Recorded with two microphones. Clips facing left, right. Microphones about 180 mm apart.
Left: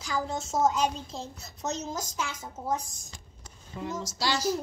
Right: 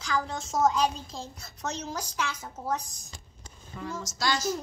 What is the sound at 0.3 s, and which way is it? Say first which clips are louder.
Speech: even; 25° left (ahead or behind).